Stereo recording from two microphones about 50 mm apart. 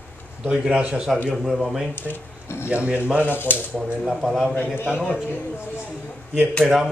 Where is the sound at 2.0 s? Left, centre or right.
Left.